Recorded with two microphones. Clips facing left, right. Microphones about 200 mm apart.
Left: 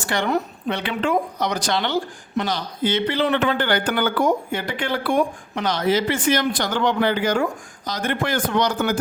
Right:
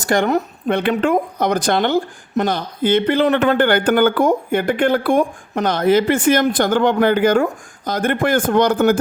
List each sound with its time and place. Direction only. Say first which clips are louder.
0.0 s speech: right 6 dB; 45° right (ahead or behind)